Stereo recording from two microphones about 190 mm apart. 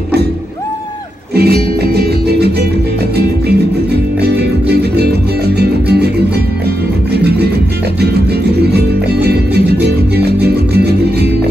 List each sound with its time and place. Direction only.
1.3 s music: 55° right (ahead or behind)
8.7 s music: 60° right (ahead or behind)